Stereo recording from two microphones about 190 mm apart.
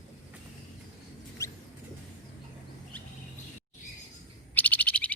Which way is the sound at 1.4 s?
15° left (ahead or behind).